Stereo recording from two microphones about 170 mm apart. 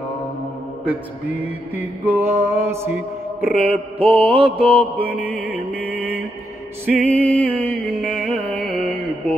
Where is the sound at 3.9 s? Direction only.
30° right (ahead or behind).